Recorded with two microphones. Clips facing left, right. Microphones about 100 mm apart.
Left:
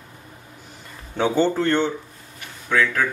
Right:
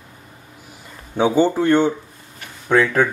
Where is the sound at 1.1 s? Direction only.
15° right (ahead or behind).